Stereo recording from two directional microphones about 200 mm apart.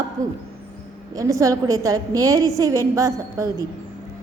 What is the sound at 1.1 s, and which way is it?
A woman's voice, 15° right (ahead or behind).